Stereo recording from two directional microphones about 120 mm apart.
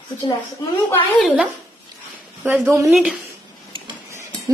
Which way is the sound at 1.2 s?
5° right (ahead or behind).